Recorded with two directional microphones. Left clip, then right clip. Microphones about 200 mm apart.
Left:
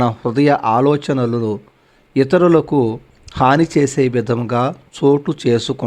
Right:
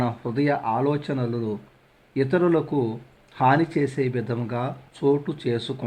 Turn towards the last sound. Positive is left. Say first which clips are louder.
# left 10 dB
turn(degrees=30)  # may be behind; listen again after turning